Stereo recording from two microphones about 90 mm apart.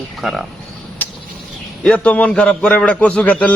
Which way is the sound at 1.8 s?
15° left (ahead or behind).